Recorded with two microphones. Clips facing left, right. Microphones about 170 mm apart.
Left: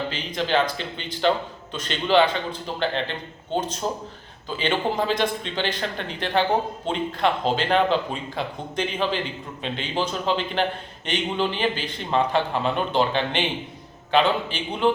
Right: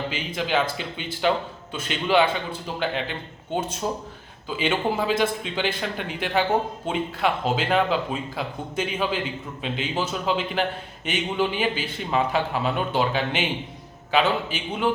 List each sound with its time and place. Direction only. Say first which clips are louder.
0.1 s a man's voice: left 1 dB; 10° right (ahead or behind)